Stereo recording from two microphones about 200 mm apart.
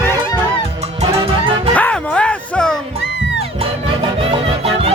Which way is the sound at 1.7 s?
5° left (ahead or behind).